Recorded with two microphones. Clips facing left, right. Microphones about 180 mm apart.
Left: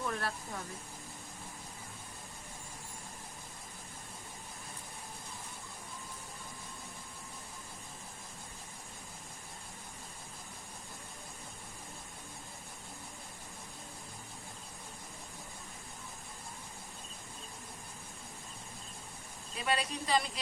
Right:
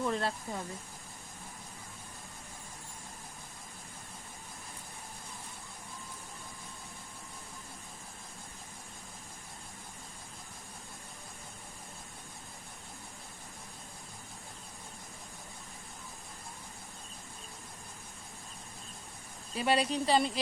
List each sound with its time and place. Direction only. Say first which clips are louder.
0.0 s speech: right 5 dB; 25° right (ahead or behind)
19.5 s a woman's voice: right 6 dB; 30° right (ahead or behind)